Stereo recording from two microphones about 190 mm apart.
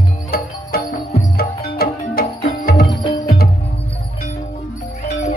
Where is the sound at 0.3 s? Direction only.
50° left (ahead or behind).